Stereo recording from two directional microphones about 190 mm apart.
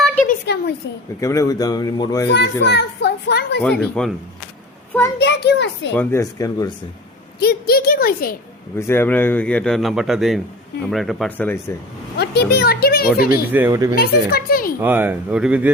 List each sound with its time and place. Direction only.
0.3 s a sound: 60° left (ahead or behind)
1.2 s speech: 15° left (ahead or behind)
2.3 s a child's voice: 65° left (ahead or behind)
3.6 s speech: 5° left (ahead or behind)
5.2 s a child's voice: 65° left (ahead or behind)
5.9 s speech: 10° left (ahead or behind)
7.3 s a woman's voice: 55° left (ahead or behind)
8.9 s speech: 10° left (ahead or behind)
12.1 s a child's voice: 60° left (ahead or behind)
13.5 s speech: 10° right (ahead or behind)
13.9 s a woman's voice: 55° left (ahead or behind)
14.8 s speech: 10° right (ahead or behind)